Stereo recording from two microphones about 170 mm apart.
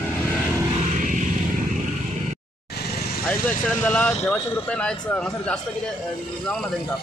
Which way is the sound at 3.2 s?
10° left (ahead or behind).